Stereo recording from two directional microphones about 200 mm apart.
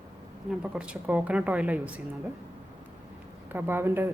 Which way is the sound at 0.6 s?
5° right (ahead or behind).